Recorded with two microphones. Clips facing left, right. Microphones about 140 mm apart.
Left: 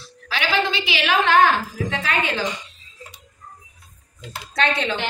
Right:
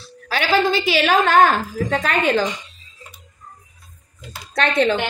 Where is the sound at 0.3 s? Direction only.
40° right (ahead or behind).